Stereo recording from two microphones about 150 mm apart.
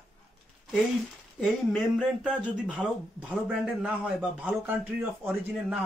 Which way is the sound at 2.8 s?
Centre (ahead or behind).